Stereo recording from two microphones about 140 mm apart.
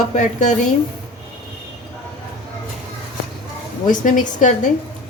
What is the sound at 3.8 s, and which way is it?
Speech, 70° left (ahead or behind).